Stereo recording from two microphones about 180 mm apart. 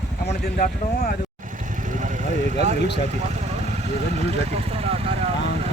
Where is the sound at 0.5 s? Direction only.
50° left (ahead or behind).